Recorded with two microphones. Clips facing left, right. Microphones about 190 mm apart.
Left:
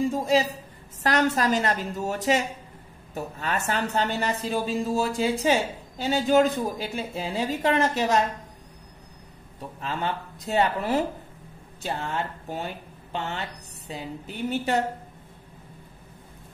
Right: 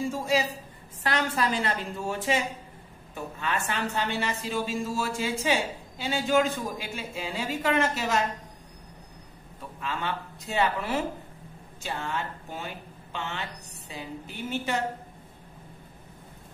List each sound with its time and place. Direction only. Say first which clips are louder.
1.0 s speech: left 5 dB; 40° left (ahead or behind)
9.6 s a woman's voice: left 3 dB; 35° left (ahead or behind)